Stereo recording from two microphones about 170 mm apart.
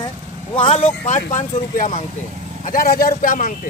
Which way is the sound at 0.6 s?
35° left (ahead or behind).